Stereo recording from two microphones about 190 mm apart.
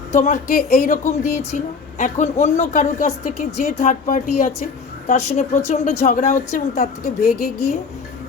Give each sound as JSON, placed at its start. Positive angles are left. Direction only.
{"t": 0.1, "sound": "a woman's voice", "side_deg": 40}